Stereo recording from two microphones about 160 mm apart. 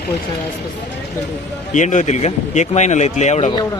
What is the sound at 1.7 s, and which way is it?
Speech, 50° left (ahead or behind).